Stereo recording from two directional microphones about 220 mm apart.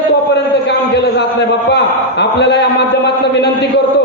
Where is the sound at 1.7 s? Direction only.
50° left (ahead or behind).